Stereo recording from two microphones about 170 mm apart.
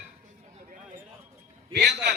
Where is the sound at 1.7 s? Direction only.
75° right (ahead or behind).